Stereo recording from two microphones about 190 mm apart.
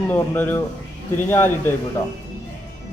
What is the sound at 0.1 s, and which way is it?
Speech, 10° left (ahead or behind).